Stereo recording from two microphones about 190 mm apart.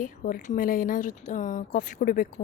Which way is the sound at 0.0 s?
45° left (ahead or behind).